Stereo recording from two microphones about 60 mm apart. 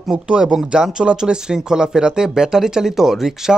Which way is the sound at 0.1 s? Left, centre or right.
Centre.